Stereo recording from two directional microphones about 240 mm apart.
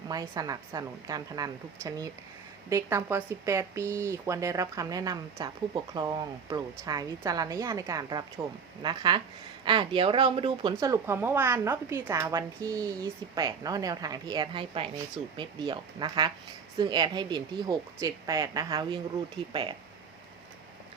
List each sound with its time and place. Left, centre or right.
0.1 s speech: centre